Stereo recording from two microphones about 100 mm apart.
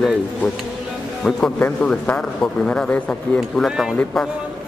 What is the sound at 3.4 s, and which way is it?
Speech, centre (ahead or behind).